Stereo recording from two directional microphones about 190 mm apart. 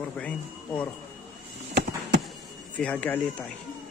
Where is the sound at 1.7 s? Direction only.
65° right (ahead or behind).